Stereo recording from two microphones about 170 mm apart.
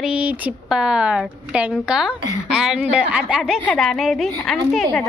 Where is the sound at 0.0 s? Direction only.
5° right (ahead or behind).